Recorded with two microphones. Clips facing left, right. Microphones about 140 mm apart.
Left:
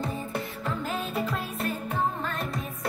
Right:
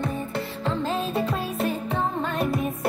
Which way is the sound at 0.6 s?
30° right (ahead or behind).